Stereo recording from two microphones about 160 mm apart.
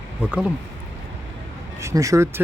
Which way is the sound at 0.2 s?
5° right (ahead or behind).